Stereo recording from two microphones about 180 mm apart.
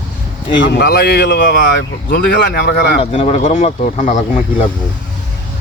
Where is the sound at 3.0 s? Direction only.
35° left (ahead or behind).